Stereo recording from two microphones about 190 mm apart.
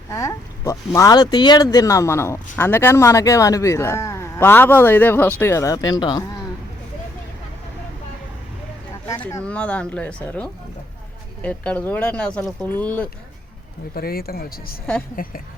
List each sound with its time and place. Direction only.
0.1 s speech: 15° left (ahead or behind)
9.2 s speech: 5° left (ahead or behind)
13.9 s speech: 55° left (ahead or behind)